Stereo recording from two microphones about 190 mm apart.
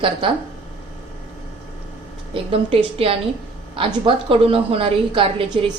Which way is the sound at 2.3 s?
30° right (ahead or behind).